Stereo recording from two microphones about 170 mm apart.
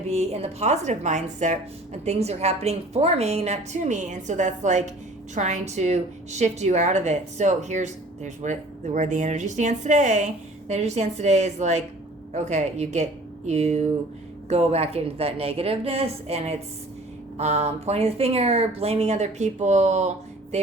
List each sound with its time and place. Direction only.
0.1 s a woman's voice: 40° right (ahead or behind)